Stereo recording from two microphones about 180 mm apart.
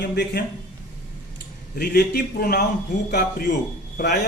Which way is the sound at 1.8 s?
60° left (ahead or behind).